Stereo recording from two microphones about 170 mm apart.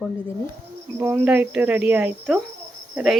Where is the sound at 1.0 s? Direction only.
10° right (ahead or behind).